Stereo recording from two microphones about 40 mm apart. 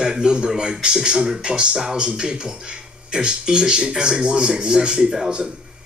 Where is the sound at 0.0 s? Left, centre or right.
Centre.